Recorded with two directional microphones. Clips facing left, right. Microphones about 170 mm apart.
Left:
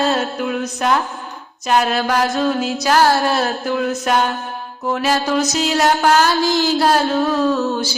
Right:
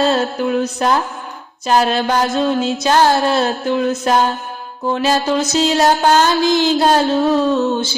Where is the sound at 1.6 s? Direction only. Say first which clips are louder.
Right 2 dB; 30° right (ahead or behind).